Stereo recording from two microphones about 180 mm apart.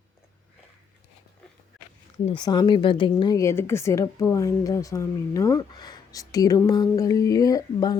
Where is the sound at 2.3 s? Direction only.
25° left (ahead or behind).